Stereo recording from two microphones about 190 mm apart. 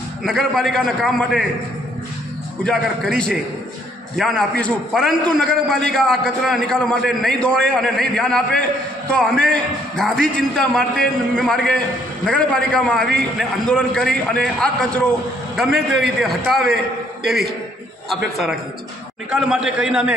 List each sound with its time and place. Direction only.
0.2 s a man's voice: centre (ahead or behind)
2.6 s a man's voice: 5° left (ahead or behind)